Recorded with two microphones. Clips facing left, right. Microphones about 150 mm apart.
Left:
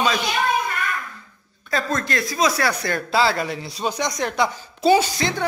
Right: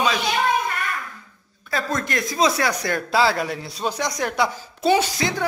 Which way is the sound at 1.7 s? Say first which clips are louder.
Left 1 dB; 15° right (ahead or behind).